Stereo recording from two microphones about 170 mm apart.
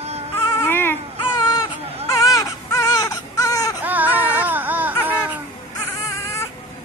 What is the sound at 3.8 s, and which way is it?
Baby cry, 10° right (ahead or behind).